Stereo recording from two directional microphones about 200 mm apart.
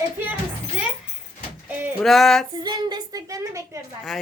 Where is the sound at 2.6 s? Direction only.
20° right (ahead or behind).